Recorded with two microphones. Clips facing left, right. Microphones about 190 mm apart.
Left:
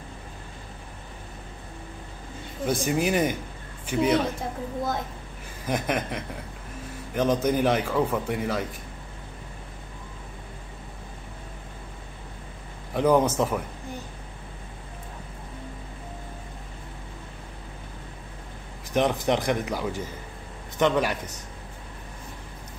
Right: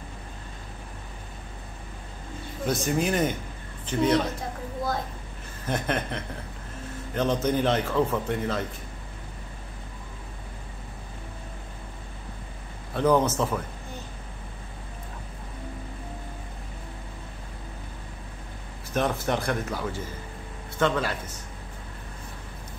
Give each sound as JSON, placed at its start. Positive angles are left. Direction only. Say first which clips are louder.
{"t": 2.6, "sound": "a man's voice", "louder": "left 1 dB", "side_deg": 10}
{"t": 5.7, "sound": "a man's voice", "louder": "left 1 dB", "side_deg": 10}
{"t": 12.9, "sound": "a man's voice", "louder": "left 1 dB", "side_deg": 15}
{"t": 18.9, "sound": "a man's voice", "louder": "left 3 dB", "side_deg": 15}